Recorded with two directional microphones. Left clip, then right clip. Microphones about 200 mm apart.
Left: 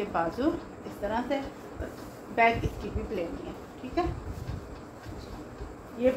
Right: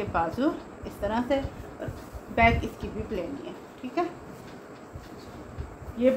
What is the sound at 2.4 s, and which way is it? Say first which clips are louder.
Speech: right 2 dB; 50° right (ahead or behind).